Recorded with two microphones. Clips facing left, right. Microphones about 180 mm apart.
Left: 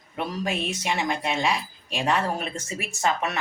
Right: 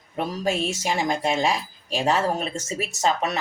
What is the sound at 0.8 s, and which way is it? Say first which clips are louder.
Speech: right 3 dB; 40° right (ahead or behind).